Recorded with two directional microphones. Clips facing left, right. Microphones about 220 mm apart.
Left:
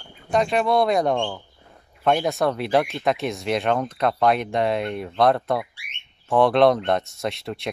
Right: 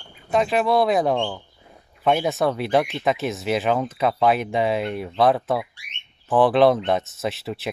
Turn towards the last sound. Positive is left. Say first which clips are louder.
# right 1 dB
turn(degrees=-5)  # may be behind; listen again after turning